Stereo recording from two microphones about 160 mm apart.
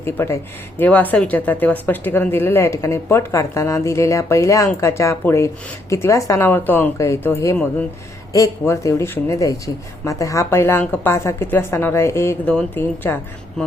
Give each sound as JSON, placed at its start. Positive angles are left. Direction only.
{"t": 0.0, "sound": "speech", "side_deg": 15}